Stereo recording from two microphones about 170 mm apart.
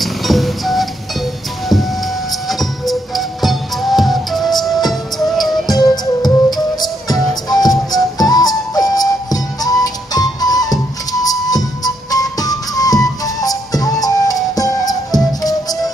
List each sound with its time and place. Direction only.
0.0 s music: centre (ahead or behind)
2.4 s music: centre (ahead or behind)
5.7 s music: 25° left (ahead or behind)